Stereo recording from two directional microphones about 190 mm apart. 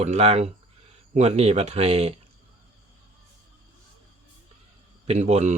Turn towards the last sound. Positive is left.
turn(degrees=-35)  # may be behind; listen again after turning